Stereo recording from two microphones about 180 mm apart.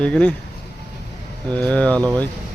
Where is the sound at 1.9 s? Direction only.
20° right (ahead or behind).